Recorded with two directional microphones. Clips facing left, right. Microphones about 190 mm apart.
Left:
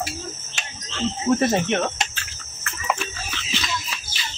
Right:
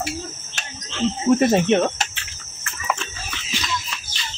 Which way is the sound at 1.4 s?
25° right (ahead or behind).